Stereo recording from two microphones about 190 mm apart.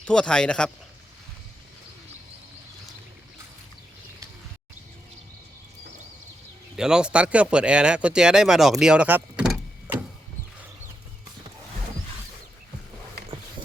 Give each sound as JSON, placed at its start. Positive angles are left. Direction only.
{"t": 0.0, "sound": "speech", "side_deg": 5}
{"t": 6.7, "sound": "speech", "side_deg": -5}